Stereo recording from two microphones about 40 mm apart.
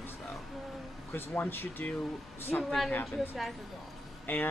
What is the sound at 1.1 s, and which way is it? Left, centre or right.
Speech, left.